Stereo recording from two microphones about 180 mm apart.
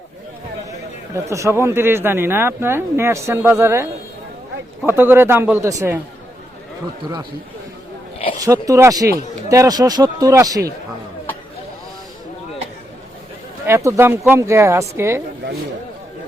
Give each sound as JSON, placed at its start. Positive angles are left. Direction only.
{"t": 1.1, "sound": "speech", "side_deg": -15}
{"t": 4.9, "sound": "speech", "side_deg": -10}
{"t": 8.4, "sound": "speech", "side_deg": -15}
{"t": 13.7, "sound": "speech", "side_deg": -15}